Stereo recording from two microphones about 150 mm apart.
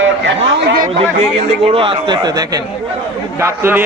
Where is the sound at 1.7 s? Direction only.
40° right (ahead or behind).